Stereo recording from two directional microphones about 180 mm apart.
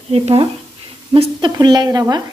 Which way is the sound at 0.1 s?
30° right (ahead or behind).